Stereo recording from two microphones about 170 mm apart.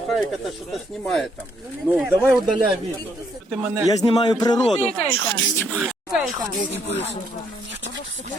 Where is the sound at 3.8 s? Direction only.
20° left (ahead or behind).